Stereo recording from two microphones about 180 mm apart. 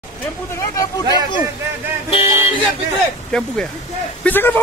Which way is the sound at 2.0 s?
30° left (ahead or behind).